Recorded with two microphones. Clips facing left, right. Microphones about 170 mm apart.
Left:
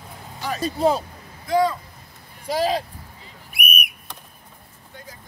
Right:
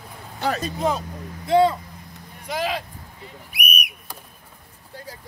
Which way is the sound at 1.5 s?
25° right (ahead or behind).